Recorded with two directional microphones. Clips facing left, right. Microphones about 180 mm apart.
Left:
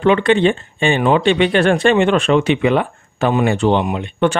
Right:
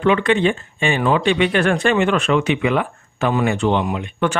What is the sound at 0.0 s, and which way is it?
Speech, 30° left (ahead or behind).